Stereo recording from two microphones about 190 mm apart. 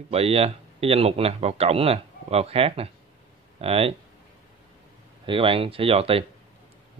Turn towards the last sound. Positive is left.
turn(degrees=-30)  # may be behind; listen again after turning